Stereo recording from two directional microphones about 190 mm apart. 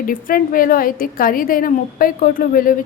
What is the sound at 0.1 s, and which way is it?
A woman's voice, 45° left (ahead or behind).